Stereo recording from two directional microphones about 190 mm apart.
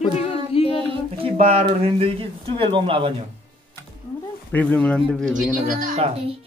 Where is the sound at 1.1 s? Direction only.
30° right (ahead or behind).